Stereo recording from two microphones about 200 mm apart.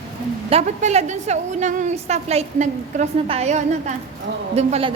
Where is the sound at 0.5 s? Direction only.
35° right (ahead or behind).